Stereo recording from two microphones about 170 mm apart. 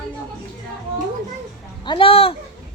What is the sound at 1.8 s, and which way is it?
Speech, 30° left (ahead or behind).